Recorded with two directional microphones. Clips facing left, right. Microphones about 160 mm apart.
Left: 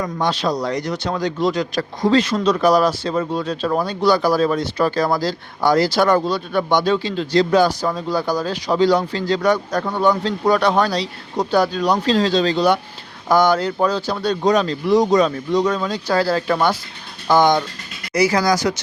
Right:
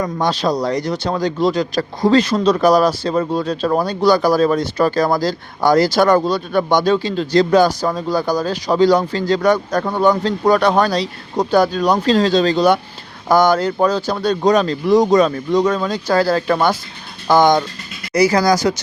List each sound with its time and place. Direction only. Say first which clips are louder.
0.0 s speech: right 2 dB; 40° right (ahead or behind)